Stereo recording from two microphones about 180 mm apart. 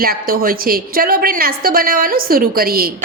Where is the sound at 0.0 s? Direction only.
55° right (ahead or behind).